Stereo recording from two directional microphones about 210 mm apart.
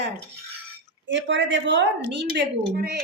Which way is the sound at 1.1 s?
60° right (ahead or behind).